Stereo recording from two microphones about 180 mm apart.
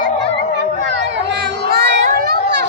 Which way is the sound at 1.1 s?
75° right (ahead or behind).